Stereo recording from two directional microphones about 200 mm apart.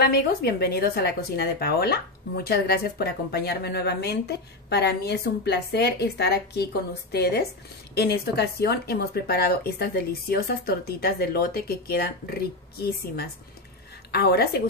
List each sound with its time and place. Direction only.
0.0 s a woman's voice: 50° left (ahead or behind)